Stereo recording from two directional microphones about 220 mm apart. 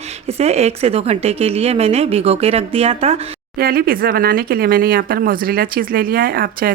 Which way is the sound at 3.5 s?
45° right (ahead or behind).